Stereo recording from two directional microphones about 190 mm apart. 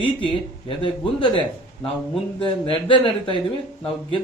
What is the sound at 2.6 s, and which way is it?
Speech, 30° left (ahead or behind).